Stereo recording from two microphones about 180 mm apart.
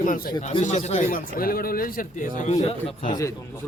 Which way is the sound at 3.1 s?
20° left (ahead or behind).